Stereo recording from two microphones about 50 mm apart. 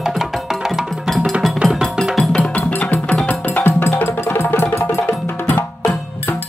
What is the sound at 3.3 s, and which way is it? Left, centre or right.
Music, left.